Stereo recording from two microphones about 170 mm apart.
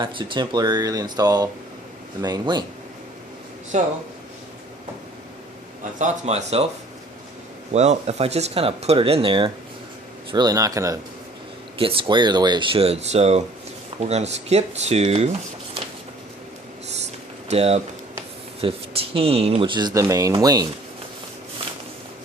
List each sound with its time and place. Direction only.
0.0 s speech: 30° right (ahead or behind)
3.7 s speech: 45° right (ahead or behind)
6.0 s speech: 45° right (ahead or behind)
7.7 s speech: 40° right (ahead or behind); by 11.0 s 20° right (ahead or behind)
11.8 s speech: 30° right (ahead or behind)
17.5 s speech: 40° right (ahead or behind); by 20.7 s 20° right (ahead or behind)